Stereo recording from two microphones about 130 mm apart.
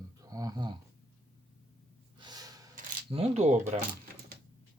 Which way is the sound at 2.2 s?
30° right (ahead or behind).